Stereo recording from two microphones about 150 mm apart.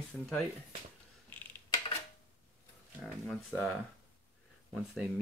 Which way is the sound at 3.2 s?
5° left (ahead or behind).